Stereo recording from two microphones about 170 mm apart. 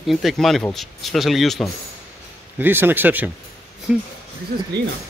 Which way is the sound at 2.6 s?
10° right (ahead or behind).